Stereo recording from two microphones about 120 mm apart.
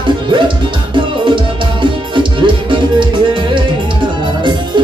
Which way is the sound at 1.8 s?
40° right (ahead or behind).